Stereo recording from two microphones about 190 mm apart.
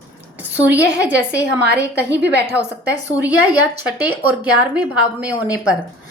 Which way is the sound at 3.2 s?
5° right (ahead or behind).